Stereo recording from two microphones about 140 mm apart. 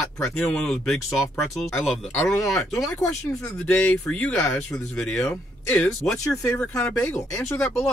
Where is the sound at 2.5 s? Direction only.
20° left (ahead or behind).